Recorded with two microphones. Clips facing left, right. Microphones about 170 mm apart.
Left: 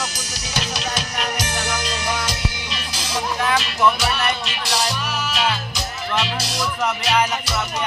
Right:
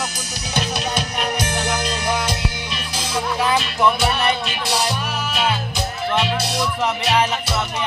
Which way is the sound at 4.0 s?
55° right (ahead or behind).